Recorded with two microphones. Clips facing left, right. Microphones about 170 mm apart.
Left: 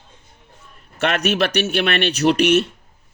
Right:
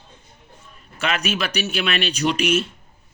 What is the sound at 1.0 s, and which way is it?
A man's voice, 60° left (ahead or behind).